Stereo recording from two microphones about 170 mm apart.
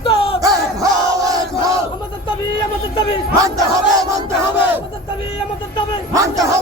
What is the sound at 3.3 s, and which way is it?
Battle cry, 20° right (ahead or behind).